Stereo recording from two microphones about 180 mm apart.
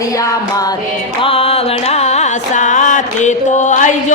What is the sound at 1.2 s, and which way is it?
Music, 35° left (ahead or behind).